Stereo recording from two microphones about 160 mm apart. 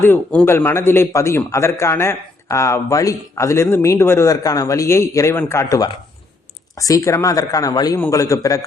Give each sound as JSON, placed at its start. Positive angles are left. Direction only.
{"t": 0.0, "sound": "a man's voice", "side_deg": 10}